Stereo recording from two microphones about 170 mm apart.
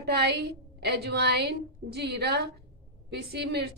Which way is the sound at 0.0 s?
75° right (ahead or behind).